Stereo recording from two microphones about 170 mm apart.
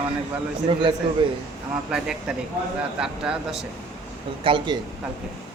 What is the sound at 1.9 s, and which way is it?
Speech, 5° right (ahead or behind).